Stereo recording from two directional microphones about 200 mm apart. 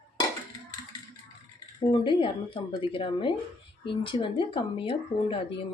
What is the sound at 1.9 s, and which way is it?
Speech, 25° left (ahead or behind).